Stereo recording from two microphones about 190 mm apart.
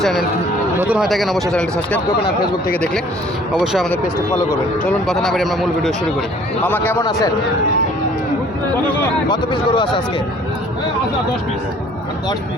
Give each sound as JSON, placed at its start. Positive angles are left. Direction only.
{"t": 0.0, "sound": "speech", "side_deg": 0}
{"t": 3.5, "sound": "a man's voice", "side_deg": -5}
{"t": 9.3, "sound": "speech", "side_deg": 25}